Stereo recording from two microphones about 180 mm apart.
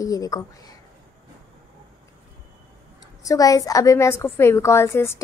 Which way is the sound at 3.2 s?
20° left (ahead or behind).